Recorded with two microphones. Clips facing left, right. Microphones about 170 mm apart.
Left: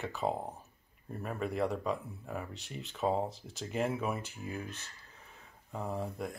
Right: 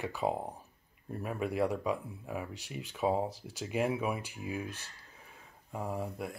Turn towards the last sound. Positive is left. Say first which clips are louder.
# even
turn(degrees=-5)  # may be behind; listen again after turning